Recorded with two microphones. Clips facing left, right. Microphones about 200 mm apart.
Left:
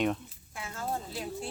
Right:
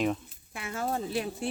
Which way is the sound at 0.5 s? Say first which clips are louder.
Right 4 dB; 70° right (ahead or behind).